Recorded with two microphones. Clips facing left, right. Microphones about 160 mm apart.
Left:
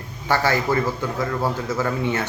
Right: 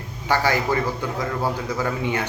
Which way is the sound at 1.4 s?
15° right (ahead or behind).